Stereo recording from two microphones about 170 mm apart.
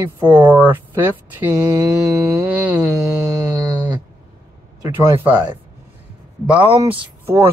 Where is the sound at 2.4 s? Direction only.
10° right (ahead or behind).